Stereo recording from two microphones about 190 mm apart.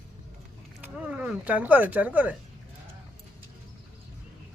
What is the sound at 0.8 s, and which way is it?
Speech, 5° right (ahead or behind).